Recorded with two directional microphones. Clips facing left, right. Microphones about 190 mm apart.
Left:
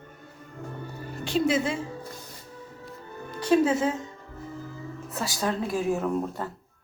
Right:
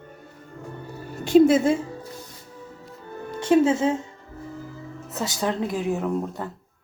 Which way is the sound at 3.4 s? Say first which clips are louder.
Right 3 dB; 25° right (ahead or behind).